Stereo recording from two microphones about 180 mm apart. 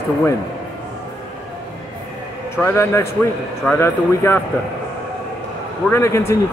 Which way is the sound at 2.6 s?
15° left (ahead or behind).